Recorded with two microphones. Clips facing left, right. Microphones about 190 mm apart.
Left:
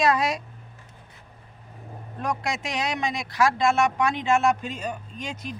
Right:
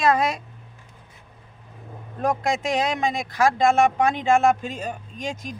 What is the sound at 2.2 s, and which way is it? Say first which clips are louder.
Speech: right 6 dB; 50° right (ahead or behind).